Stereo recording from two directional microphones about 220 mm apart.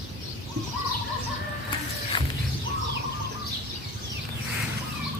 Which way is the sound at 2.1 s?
25° left (ahead or behind).